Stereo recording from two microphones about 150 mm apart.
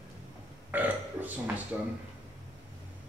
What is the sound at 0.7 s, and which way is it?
Speech, 10° right (ahead or behind).